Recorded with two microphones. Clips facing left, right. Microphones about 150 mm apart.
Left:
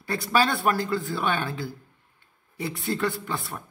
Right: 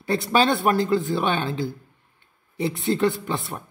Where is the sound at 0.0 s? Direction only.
20° right (ahead or behind).